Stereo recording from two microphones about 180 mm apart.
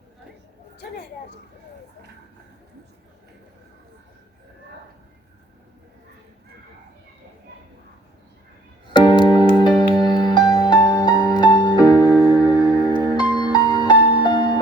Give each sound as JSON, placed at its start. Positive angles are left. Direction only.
{"t": 8.9, "sound": "music", "side_deg": 25}